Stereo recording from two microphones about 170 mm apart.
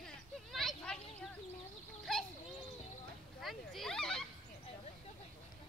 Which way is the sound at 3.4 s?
Centre (ahead or behind).